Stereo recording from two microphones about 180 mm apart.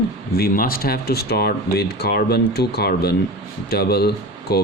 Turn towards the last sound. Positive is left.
turn(degrees=60)  # may be behind; listen again after turning